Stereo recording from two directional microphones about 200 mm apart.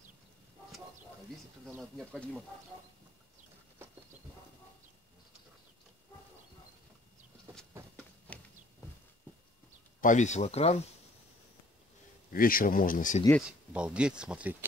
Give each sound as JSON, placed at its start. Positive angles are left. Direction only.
{"t": 1.8, "sound": "speech", "side_deg": 0}
{"t": 8.3, "sound": "a sound", "side_deg": 5}
{"t": 10.0, "sound": "speech", "side_deg": 35}
{"t": 12.3, "sound": "speech", "side_deg": 45}
{"t": 13.5, "sound": "speech", "side_deg": -5}